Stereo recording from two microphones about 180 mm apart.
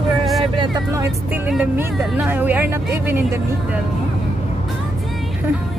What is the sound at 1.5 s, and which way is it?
Speech, 5° right (ahead or behind).